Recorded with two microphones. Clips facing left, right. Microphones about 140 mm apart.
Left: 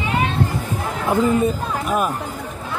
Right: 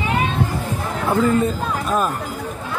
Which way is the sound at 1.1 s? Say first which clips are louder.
Even; 15° left (ahead or behind).